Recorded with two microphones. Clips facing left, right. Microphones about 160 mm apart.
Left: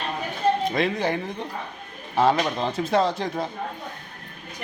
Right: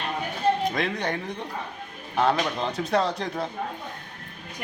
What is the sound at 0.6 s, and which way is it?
Speech, centre (ahead or behind).